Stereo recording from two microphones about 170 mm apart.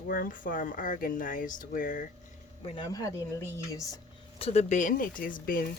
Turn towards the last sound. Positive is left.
turn(degrees=55)  # may be behind; listen again after turning